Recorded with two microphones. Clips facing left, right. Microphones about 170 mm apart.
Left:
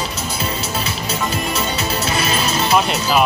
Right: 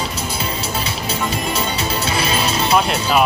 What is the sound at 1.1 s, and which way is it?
Music, 30° right (ahead or behind).